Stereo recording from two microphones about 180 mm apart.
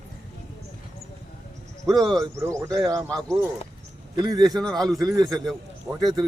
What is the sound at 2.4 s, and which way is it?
Speech, 15° right (ahead or behind).